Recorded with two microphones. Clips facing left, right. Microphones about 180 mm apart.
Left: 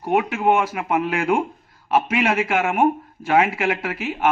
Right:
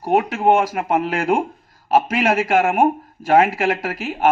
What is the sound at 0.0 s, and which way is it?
A man's voice, 40° right (ahead or behind).